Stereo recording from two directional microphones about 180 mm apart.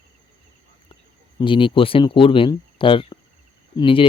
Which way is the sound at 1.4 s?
25° left (ahead or behind).